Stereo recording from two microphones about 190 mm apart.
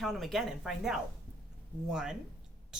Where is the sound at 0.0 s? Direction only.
Centre (ahead or behind).